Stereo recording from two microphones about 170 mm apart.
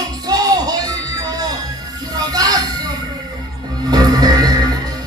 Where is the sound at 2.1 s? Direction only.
25° right (ahead or behind).